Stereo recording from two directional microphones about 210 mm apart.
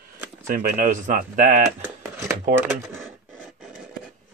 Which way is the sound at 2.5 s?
10° right (ahead or behind).